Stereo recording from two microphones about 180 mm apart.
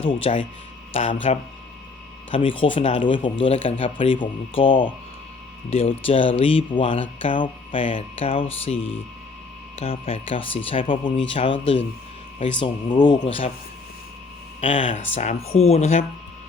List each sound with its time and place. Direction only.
0.3 s speech: 35° left (ahead or behind)
2.3 s speech: 30° left (ahead or behind)
14.6 s speech: 30° left (ahead or behind)